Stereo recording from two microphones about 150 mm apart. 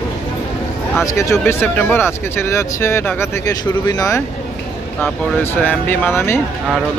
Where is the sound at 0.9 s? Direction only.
20° left (ahead or behind).